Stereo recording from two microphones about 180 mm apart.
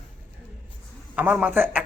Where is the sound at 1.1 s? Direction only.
10° right (ahead or behind).